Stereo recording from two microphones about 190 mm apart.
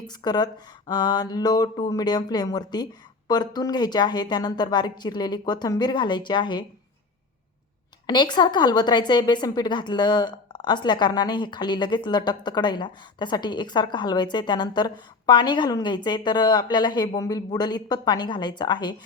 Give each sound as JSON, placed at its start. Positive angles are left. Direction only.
{"t": 0.1, "sound": "a woman's voice", "side_deg": 20}
{"t": 8.0, "sound": "a woman's voice", "side_deg": 25}